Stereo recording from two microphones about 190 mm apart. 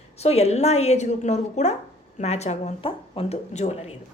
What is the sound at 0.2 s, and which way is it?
A woman's voice, 35° left (ahead or behind).